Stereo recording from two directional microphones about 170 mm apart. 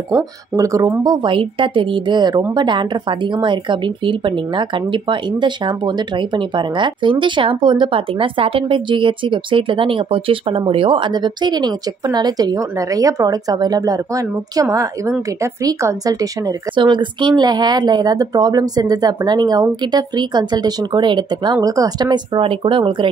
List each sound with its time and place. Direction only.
0.6 s speech: 20° right (ahead or behind)